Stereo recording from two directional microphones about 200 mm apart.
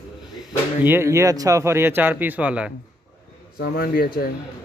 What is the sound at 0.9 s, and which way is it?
Speech, 15° right (ahead or behind).